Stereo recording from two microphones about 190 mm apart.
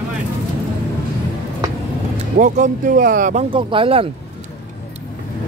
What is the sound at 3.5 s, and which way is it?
Speech, 25° right (ahead or behind).